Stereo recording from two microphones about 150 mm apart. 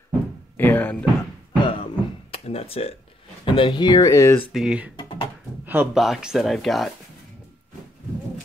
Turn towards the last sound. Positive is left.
turn(degrees=0)  # may be behind; listen again after turning